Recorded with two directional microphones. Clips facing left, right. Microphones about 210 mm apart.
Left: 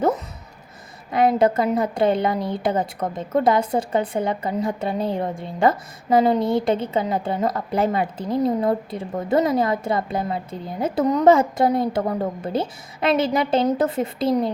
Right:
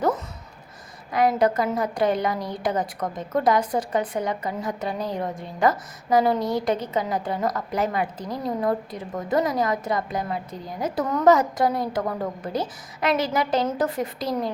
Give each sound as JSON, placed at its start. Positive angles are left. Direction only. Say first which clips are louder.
{"t": 1.1, "sound": "a woman's voice", "louder": "left 3 dB", "side_deg": 25}